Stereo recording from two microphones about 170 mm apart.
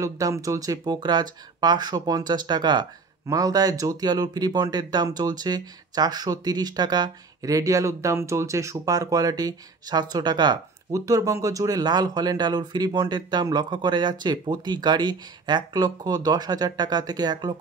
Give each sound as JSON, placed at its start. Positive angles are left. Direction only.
{"t": 0.0, "sound": "speech", "side_deg": -20}